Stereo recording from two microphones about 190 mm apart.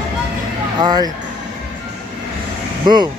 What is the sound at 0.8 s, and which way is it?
Speech, 20° right (ahead or behind).